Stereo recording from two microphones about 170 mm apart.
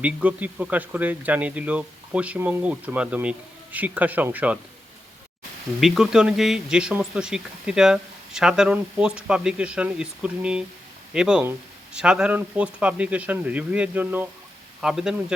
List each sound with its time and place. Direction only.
0.0 s speech: 10° right (ahead or behind)
5.8 s speech: centre (ahead or behind)